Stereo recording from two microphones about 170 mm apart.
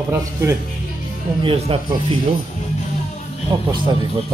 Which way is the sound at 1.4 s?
30° right (ahead or behind).